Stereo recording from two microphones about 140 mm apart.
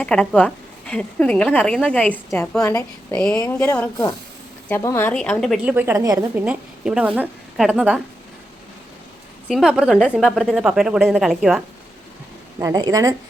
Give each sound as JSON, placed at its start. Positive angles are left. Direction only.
{"t": 0.0, "sound": "a woman's voice", "side_deg": 5}
{"t": 2.6, "sound": "a woman's voice", "side_deg": 25}
{"t": 3.1, "sound": "a woman's voice", "side_deg": 5}
{"t": 5.6, "sound": "speech", "side_deg": -15}
{"t": 6.3, "sound": "a woman's voice", "side_deg": -10}
{"t": 9.5, "sound": "a woman's voice", "side_deg": -5}
{"t": 12.5, "sound": "speech", "side_deg": -25}